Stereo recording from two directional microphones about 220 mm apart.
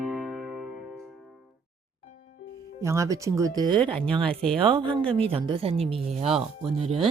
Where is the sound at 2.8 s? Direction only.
15° right (ahead or behind).